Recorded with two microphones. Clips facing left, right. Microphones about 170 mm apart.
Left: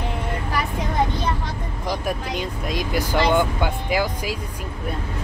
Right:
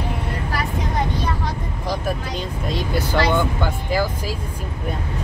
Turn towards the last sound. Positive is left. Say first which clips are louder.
# right 1 dB
turn(degrees=15)  # may be behind; listen again after turning